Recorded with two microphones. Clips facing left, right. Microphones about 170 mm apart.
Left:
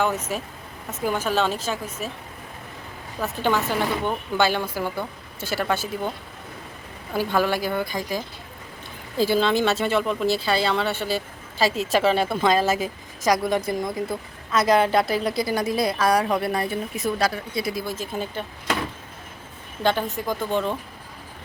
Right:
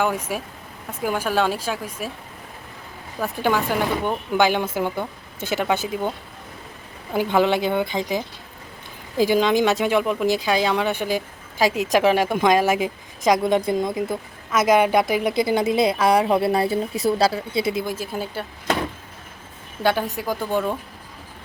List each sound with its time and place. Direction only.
0.0 s speech: 10° right (ahead or behind)
3.2 s speech: 10° right (ahead or behind)
7.1 s a woman's voice: 20° right (ahead or behind)
17.8 s speech: 10° right (ahead or behind)
19.8 s speech: 10° right (ahead or behind)